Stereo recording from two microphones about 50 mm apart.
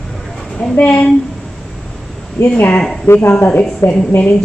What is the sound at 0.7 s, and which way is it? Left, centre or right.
Speech, left.